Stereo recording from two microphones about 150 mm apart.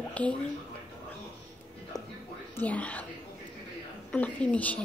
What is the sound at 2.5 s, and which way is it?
Speech, 10° left (ahead or behind).